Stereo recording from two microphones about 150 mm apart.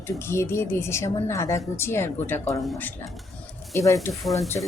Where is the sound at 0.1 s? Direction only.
15° left (ahead or behind).